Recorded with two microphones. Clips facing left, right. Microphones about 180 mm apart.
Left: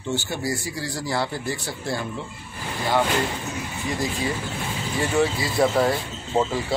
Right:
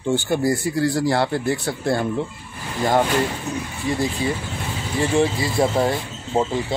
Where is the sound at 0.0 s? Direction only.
50° right (ahead or behind).